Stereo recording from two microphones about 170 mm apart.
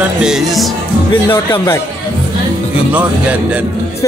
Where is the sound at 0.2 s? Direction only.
Centre (ahead or behind).